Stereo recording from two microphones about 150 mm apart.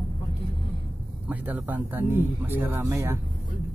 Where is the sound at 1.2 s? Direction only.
10° right (ahead or behind).